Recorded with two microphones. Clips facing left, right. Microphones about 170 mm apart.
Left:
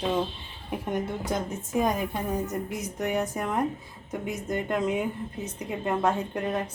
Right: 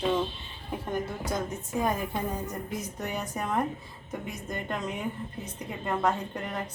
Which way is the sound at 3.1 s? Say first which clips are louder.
Left 3 dB; 15° left (ahead or behind).